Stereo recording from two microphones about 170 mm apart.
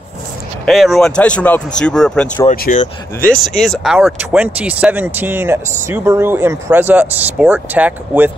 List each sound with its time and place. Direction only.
0.7 s speech: centre (ahead or behind)
2.5 s speech: 55° left (ahead or behind)
3.4 s speech: centre (ahead or behind)